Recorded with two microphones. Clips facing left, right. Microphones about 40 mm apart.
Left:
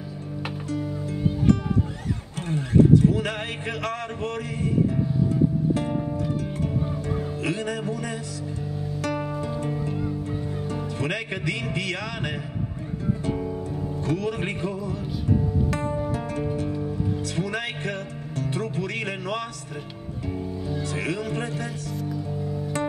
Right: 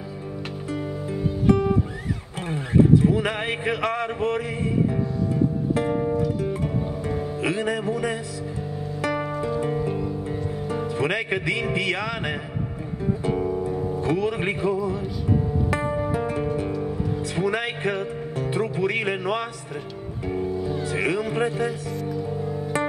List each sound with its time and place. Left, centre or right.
1.1 s music: centre
7.1 s speech: centre
9.0 s music: centre
13.2 s music: centre
16.1 s music: centre
18.4 s speech: centre
20.6 s music: centre